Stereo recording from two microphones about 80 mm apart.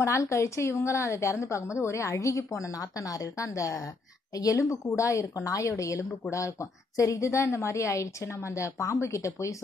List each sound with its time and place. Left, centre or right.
0.0 s a woman's voice: left